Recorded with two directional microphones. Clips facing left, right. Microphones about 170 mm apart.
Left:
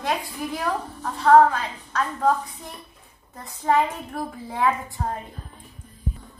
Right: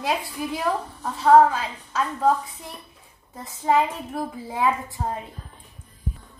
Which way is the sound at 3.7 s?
Centre (ahead or behind).